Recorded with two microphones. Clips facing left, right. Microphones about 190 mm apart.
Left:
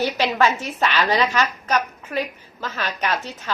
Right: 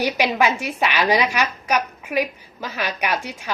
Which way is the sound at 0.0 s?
15° right (ahead or behind).